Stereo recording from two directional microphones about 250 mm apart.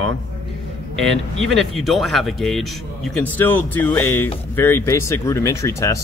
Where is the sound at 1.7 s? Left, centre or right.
Centre.